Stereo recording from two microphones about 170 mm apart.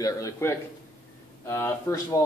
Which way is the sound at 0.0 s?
20° left (ahead or behind).